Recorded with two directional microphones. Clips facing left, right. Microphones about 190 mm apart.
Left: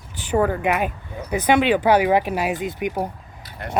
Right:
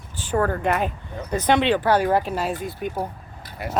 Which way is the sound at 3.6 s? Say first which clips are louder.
Right 1 dB; 10° right (ahead or behind).